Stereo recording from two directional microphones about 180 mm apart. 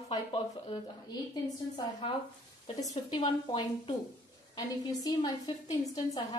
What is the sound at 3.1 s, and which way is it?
A woman's voice, 30° left (ahead or behind).